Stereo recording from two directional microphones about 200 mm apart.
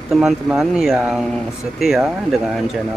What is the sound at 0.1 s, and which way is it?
Speech, centre (ahead or behind).